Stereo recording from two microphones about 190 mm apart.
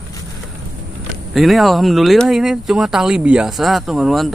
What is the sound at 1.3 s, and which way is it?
Speech, centre (ahead or behind).